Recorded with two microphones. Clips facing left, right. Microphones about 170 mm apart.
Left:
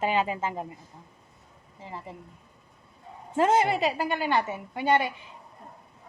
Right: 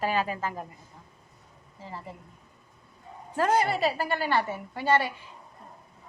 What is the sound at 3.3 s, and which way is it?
A woman's voice, 20° left (ahead or behind).